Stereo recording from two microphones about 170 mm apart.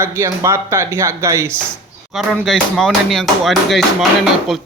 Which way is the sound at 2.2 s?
Centre (ahead or behind).